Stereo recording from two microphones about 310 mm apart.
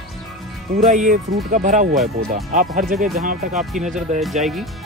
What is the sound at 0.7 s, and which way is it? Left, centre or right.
Speech, right.